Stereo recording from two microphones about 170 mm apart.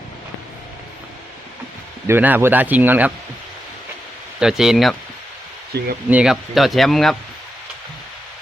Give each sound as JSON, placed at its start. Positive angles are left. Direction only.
{"t": 2.0, "sound": "speech", "side_deg": -10}
{"t": 4.4, "sound": "speech", "side_deg": -5}
{"t": 5.7, "sound": "speech", "side_deg": -70}
{"t": 6.1, "sound": "speech", "side_deg": -5}